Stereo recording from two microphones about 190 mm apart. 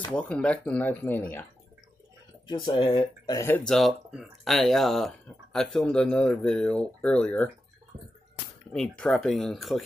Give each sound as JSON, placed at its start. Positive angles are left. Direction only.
{"t": 0.1, "sound": "speech", "side_deg": 5}
{"t": 2.4, "sound": "speech", "side_deg": 25}
{"t": 3.4, "sound": "speech", "side_deg": 5}
{"t": 8.7, "sound": "speech", "side_deg": 5}